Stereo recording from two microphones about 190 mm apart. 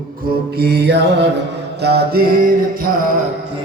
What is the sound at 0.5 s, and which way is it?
Mantra, 60° right (ahead or behind).